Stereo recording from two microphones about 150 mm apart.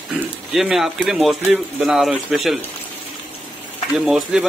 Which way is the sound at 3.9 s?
5° right (ahead or behind).